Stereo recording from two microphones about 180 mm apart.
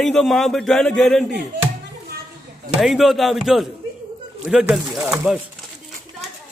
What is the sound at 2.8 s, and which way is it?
Speech, centre (ahead or behind).